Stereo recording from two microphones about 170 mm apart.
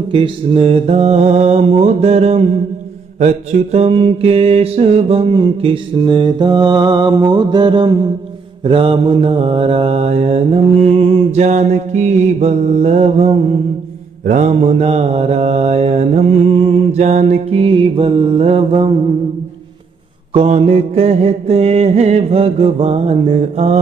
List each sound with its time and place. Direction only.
0.1 s mantra: 30° right (ahead or behind)
14.2 s mantra: 45° right (ahead or behind)
20.3 s mantra: 35° right (ahead or behind)